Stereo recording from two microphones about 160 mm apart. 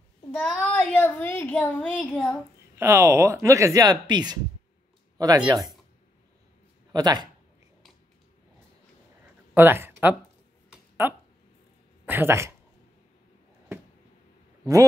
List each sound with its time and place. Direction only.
0.4 s speech: 5° left (ahead or behind)
2.8 s speech: 15° right (ahead or behind)
6.9 s a man's voice: 25° right (ahead or behind)
9.5 s speech: 15° right (ahead or behind)
10.7 s a sound: 10° right (ahead or behind)
12.1 s speech: 15° right (ahead or behind)
14.6 s a man's voice: 20° right (ahead or behind)